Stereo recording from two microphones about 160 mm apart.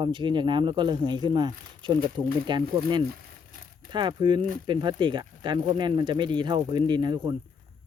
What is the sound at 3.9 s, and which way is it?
Speech, 30° right (ahead or behind).